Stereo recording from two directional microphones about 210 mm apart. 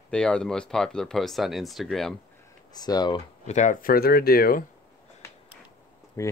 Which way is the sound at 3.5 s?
35° left (ahead or behind).